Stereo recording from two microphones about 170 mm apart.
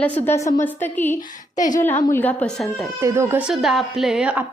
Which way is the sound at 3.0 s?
15° right (ahead or behind).